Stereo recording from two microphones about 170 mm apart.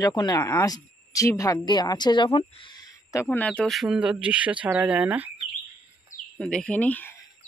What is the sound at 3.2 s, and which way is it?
Speech, 5° left (ahead or behind).